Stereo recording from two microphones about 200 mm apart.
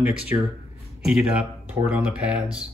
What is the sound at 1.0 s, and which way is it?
Speech, 5° right (ahead or behind).